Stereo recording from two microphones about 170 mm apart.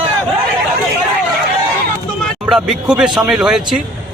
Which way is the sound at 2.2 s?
Centre (ahead or behind).